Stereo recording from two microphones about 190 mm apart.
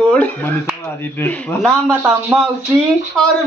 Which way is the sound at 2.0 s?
5° right (ahead or behind).